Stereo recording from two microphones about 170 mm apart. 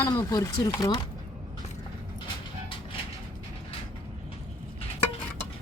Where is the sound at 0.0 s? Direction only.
20° left (ahead or behind).